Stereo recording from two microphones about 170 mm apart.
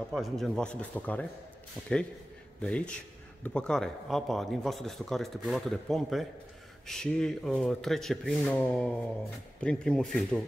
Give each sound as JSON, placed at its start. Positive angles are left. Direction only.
{"t": 0.1, "sound": "a man's voice", "side_deg": 5}
{"t": 2.6, "sound": "a man's voice", "side_deg": 5}